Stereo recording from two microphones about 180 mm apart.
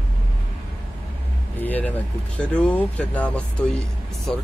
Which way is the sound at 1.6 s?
10° left (ahead or behind).